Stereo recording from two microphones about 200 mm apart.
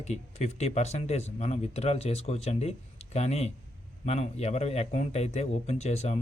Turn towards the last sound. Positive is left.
turn(degrees=35)  # may be behind; listen again after turning